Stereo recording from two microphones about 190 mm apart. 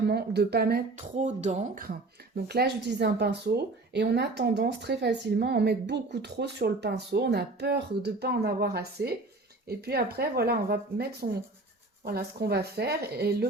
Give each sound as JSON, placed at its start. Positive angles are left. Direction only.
{"t": 0.0, "sound": "speech", "side_deg": -60}